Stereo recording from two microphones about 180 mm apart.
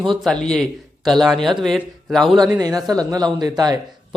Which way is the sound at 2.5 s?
20° right (ahead or behind).